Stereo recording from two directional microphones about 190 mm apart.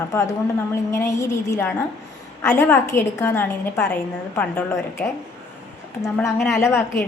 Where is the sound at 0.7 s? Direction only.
15° left (ahead or behind).